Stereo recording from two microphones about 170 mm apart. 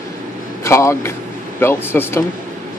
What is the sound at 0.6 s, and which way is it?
Speech, 15° left (ahead or behind).